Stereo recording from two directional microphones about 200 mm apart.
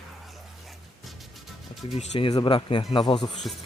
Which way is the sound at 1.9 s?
30° left (ahead or behind).